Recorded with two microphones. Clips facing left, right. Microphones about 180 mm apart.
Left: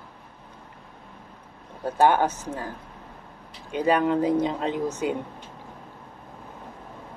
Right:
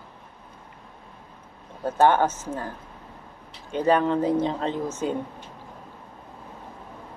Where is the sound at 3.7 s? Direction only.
10° left (ahead or behind).